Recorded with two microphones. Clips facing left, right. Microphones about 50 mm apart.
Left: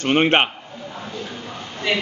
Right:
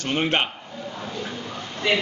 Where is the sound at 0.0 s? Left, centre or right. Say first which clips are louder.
Left 6 dB; left.